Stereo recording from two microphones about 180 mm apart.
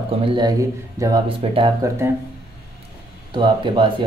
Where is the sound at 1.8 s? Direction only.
20° right (ahead or behind).